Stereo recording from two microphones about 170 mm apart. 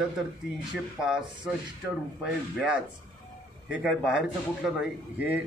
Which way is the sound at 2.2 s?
5° right (ahead or behind).